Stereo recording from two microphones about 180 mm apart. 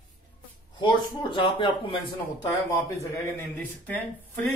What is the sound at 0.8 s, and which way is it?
Speech, 25° left (ahead or behind).